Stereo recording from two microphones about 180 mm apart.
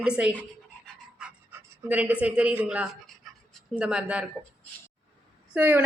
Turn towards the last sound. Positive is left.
turn(degrees=-10)  # may be behind; listen again after turning